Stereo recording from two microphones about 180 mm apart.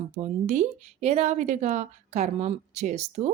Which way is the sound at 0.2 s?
40° right (ahead or behind).